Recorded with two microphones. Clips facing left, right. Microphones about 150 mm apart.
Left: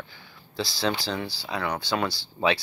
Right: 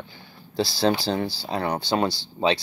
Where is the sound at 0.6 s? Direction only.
30° right (ahead or behind).